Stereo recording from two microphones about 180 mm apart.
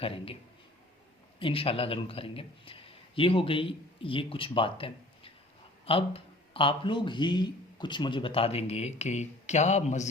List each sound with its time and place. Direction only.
0.0 s speech: 30° left (ahead or behind)
1.4 s a man's voice: 30° left (ahead or behind)